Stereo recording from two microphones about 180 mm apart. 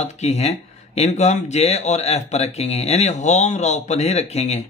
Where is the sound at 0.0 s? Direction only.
35° left (ahead or behind).